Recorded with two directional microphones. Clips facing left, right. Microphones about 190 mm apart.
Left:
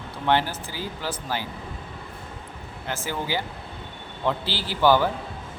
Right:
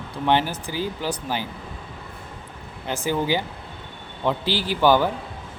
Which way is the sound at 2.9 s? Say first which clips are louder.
Right 6 dB; 15° right (ahead or behind).